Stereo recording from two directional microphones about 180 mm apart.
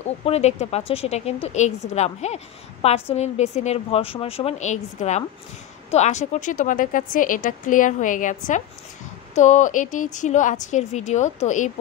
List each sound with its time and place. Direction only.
0.0 s a woman's voice: 35° left (ahead or behind)